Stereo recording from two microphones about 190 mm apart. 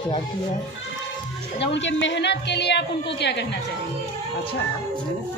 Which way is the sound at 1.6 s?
70° left (ahead or behind).